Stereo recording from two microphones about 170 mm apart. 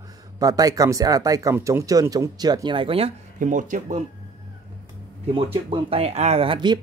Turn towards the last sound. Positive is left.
turn(degrees=-30)  # may be behind; listen again after turning